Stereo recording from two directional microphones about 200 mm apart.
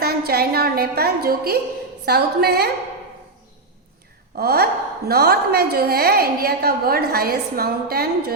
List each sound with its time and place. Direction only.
0.0 s a woman's voice: 50° right (ahead or behind)
4.4 s a woman's voice: 50° right (ahead or behind)